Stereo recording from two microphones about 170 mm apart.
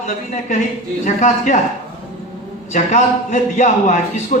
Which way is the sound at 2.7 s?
45° left (ahead or behind).